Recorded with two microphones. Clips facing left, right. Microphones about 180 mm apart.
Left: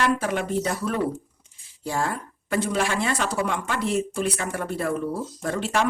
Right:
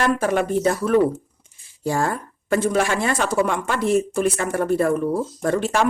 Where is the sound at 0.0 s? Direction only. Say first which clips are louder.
Right 4 dB; 50° right (ahead or behind).